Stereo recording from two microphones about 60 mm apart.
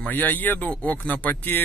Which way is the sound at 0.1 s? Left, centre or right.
Left.